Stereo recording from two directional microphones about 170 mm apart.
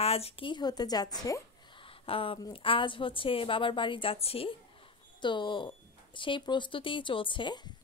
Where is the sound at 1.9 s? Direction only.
30° left (ahead or behind).